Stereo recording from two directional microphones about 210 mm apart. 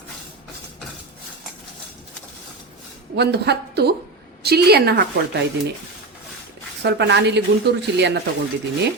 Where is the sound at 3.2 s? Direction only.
50° right (ahead or behind).